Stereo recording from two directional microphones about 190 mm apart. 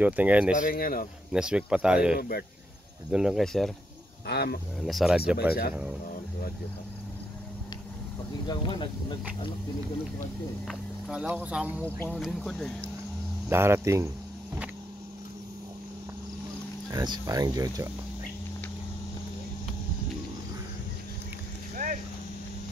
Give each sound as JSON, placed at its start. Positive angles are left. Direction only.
{"t": 0.0, "sound": "speech", "side_deg": -10}
{"t": 0.6, "sound": "speech", "side_deg": 50}
{"t": 1.3, "sound": "speech", "side_deg": -5}
{"t": 2.1, "sound": "speech", "side_deg": 50}
{"t": 3.1, "sound": "speech", "side_deg": -5}
{"t": 4.3, "sound": "speech", "side_deg": 60}
{"t": 4.8, "sound": "speech", "side_deg": 0}
{"t": 8.5, "sound": "speech", "side_deg": 25}
{"t": 10.7, "sound": "speech", "side_deg": -5}
{"t": 13.5, "sound": "speech", "side_deg": -15}
{"t": 16.9, "sound": "speech", "side_deg": -20}
{"t": 21.8, "sound": "vehicle", "side_deg": -45}